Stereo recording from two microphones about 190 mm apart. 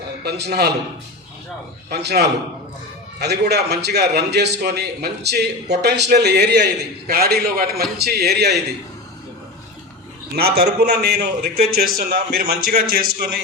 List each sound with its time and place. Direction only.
0.3 s a man's voice: 60° right (ahead or behind)
1.9 s a man's voice: 60° right (ahead or behind)
10.3 s a man's voice: 55° right (ahead or behind)